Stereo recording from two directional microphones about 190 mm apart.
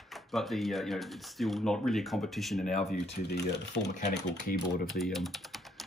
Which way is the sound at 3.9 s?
40° left (ahead or behind).